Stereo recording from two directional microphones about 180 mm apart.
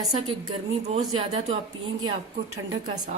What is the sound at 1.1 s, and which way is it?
Speech, 35° right (ahead or behind).